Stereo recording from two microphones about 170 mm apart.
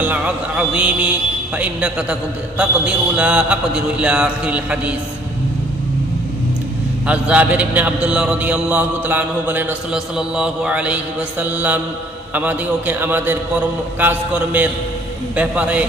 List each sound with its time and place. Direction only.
0.0 s a man's voice: 10° right (ahead or behind)
7.1 s a man's voice: 10° right (ahead or behind)